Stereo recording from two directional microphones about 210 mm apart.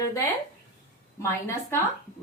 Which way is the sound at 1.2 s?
10° left (ahead or behind).